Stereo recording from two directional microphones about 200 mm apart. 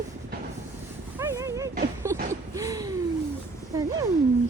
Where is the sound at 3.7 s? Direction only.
15° right (ahead or behind).